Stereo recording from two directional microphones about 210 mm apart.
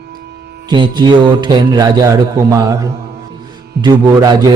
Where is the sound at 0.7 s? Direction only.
20° right (ahead or behind).